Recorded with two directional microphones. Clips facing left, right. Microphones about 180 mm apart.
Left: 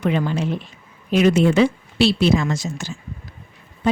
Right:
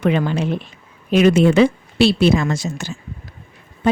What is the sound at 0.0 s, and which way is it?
A woman's voice, 70° right (ahead or behind).